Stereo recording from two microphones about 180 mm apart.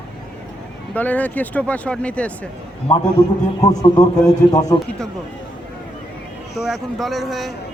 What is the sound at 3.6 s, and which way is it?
A man's voice, 20° left (ahead or behind).